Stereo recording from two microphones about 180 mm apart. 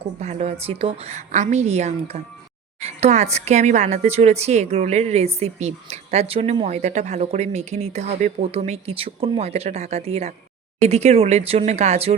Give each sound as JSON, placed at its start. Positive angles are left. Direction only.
{"t": 0.0, "sound": "a woman's voice", "side_deg": -40}